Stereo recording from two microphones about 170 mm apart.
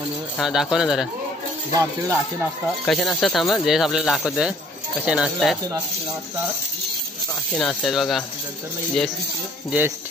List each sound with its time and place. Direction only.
0.4 s speech: centre (ahead or behind)
1.7 s music: 20° right (ahead or behind)
2.8 s speech: centre (ahead or behind)
7.5 s speech: 5° left (ahead or behind)
9.7 s speech: 10° right (ahead or behind)